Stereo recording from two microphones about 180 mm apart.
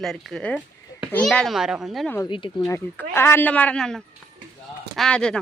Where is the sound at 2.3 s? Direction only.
25° left (ahead or behind); by 5.4 s 5° left (ahead or behind).